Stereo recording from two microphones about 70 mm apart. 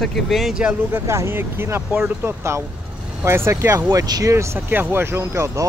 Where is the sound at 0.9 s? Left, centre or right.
Right.